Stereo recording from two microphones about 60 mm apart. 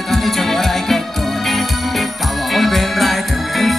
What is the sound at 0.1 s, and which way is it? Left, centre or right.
Music, centre.